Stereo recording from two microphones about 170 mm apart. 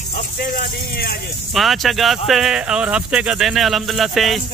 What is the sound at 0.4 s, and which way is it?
Speech, 65° left (ahead or behind).